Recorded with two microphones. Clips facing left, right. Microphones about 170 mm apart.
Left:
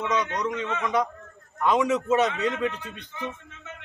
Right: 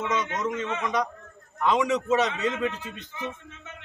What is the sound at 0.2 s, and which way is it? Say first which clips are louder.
A man's voice: left 1 dB; centre (ahead or behind).